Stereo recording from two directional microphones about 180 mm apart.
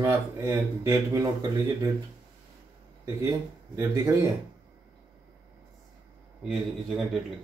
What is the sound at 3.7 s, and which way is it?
Speech, 15° right (ahead or behind).